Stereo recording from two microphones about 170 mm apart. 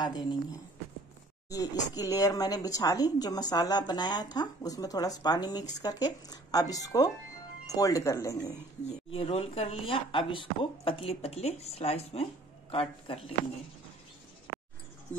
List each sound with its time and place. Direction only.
0.0 s a woman's voice: 25° left (ahead or behind)
1.5 s a woman's voice: 20° left (ahead or behind)
8.8 s speech: 35° left (ahead or behind)